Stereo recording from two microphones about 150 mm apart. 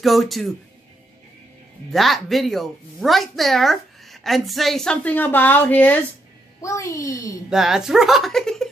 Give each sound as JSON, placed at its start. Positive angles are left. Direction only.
{"t": 0.0, "sound": "a woman's voice", "side_deg": 0}
{"t": 1.9, "sound": "a woman's voice", "side_deg": 0}
{"t": 7.4, "sound": "a woman's voice", "side_deg": -5}